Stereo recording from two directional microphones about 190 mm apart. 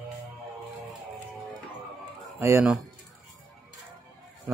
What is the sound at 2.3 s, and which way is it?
Speech, 10° right (ahead or behind).